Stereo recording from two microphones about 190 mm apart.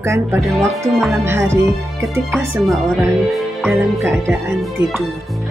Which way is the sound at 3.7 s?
10° right (ahead or behind).